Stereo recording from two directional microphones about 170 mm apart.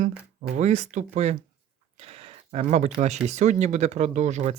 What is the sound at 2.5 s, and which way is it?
Speech, 40° right (ahead or behind).